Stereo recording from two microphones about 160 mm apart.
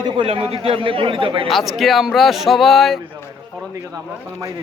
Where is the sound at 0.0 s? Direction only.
35° right (ahead or behind).